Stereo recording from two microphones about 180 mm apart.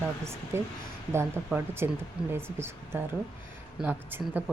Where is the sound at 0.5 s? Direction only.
15° right (ahead or behind).